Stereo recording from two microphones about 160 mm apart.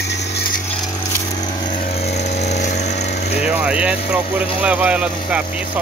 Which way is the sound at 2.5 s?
45° left (ahead or behind).